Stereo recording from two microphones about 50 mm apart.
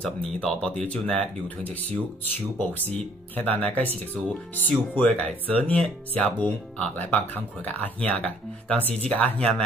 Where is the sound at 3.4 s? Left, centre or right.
Left.